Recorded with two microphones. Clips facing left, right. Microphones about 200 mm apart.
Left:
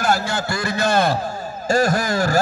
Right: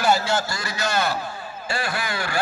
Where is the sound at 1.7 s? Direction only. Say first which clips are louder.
Left 10 dB; 45° left (ahead or behind).